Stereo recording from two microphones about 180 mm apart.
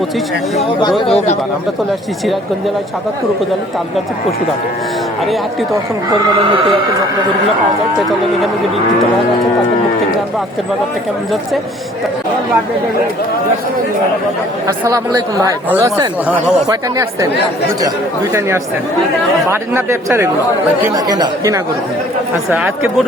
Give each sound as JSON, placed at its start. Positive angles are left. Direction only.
{"t": 0.8, "sound": "speech", "side_deg": 25}
{"t": 5.7, "sound": "speech", "side_deg": -20}
{"t": 14.8, "sound": "speech", "side_deg": -20}
{"t": 22.5, "sound": "speech", "side_deg": -10}